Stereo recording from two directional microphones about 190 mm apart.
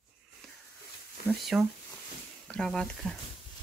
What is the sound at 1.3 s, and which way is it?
Speech, centre (ahead or behind).